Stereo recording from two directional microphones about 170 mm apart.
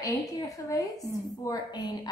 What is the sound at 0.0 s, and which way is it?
A woman's voice, 20° left (ahead or behind).